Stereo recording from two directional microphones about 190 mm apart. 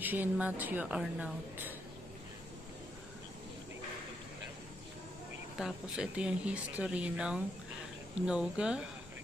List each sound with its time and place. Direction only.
0.0 s a woman's voice: 10° right (ahead or behind)
5.6 s speech: 5° right (ahead or behind)